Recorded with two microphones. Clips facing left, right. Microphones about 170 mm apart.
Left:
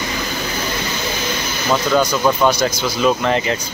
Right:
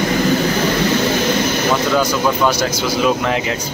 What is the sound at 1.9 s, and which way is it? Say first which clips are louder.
Speech: even; 5° right (ahead or behind).